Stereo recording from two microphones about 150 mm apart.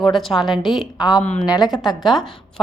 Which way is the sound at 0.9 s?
30° left (ahead or behind).